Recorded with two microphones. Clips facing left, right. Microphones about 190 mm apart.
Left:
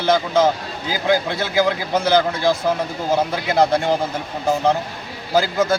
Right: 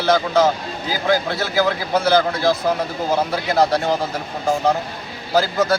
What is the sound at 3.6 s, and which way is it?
Speech, 15° left (ahead or behind).